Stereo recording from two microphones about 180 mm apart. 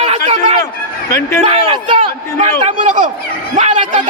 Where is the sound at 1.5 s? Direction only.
35° right (ahead or behind).